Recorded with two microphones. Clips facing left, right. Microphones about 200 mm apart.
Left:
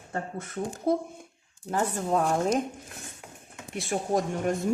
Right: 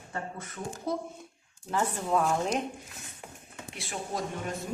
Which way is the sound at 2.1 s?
40° left (ahead or behind).